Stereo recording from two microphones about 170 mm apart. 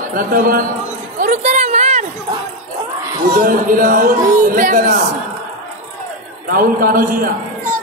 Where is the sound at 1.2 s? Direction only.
45° right (ahead or behind).